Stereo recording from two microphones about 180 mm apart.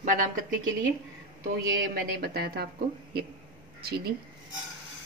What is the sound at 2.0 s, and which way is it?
A woman's voice, 60° right (ahead or behind).